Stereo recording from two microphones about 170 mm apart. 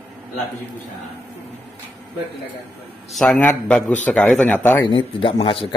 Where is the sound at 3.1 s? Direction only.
5° left (ahead or behind).